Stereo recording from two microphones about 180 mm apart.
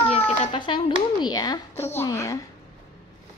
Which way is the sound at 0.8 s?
25° left (ahead or behind).